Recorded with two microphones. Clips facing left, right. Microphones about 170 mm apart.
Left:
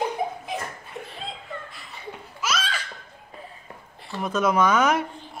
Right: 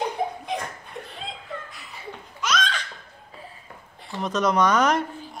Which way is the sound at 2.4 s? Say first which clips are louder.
Right 2 dB; 5° left (ahead or behind).